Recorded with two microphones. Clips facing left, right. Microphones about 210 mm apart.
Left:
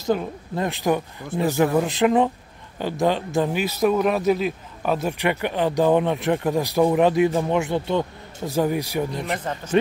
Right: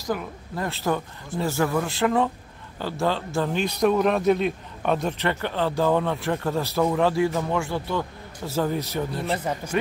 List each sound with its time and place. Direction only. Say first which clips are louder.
0.0 s a man's voice: left 5 dB; 25° left (ahead or behind)
3.5 s a man's voice: right 2 dB; 5° left (ahead or behind)
9.4 s a man's voice: left 1 dB; 10° right (ahead or behind)